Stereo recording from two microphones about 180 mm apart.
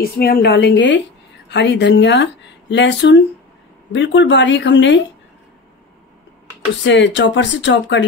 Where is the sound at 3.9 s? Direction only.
90° left.